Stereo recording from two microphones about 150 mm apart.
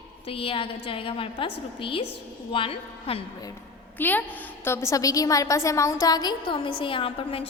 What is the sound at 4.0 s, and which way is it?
A woman's voice, 10° left (ahead or behind).